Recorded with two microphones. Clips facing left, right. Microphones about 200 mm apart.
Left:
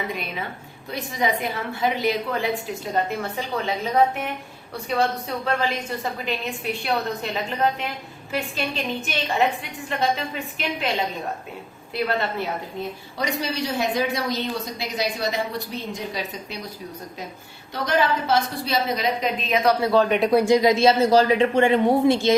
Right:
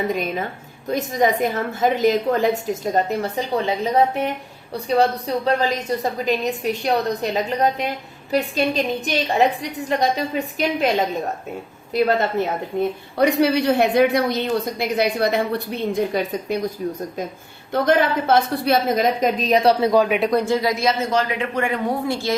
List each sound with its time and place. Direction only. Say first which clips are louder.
0.1 s a woman's voice: right 7 dB; 45° right (ahead or behind)
4.7 s a woman's voice: right 5 dB; 35° right (ahead or behind)
11.9 s a woman's voice: right 6 dB; 40° right (ahead or behind)
13.1 s a woman's voice: right 10 dB; 60° right (ahead or behind); by 19.7 s 35° right (ahead or behind)
19.8 s speech: right 2 dB; 10° right (ahead or behind)
20.3 s speech: left 3 dB; 15° left (ahead or behind)